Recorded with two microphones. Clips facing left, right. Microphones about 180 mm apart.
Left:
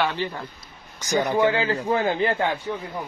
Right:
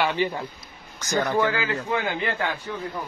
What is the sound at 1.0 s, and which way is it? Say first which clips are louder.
Speech: left 2 dB; 15° left (ahead or behind).